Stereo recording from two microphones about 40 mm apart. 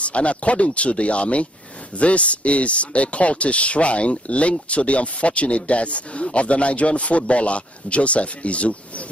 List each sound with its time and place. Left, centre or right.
0.0 s speech: left